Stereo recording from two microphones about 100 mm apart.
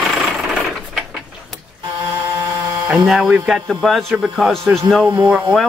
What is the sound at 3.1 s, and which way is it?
Speech, 5° right (ahead or behind).